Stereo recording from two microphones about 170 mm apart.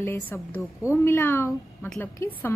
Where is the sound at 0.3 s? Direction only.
10° left (ahead or behind).